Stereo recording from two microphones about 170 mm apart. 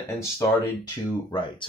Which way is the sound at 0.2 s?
20° left (ahead or behind).